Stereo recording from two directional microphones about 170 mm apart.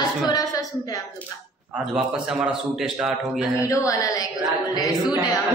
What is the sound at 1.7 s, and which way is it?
Speech, 5° right (ahead or behind).